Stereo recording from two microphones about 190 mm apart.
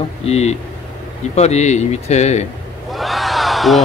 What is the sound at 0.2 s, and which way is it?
Speech, 35° left (ahead or behind).